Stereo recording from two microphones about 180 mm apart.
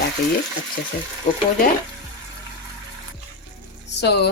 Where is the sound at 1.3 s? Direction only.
35° left (ahead or behind).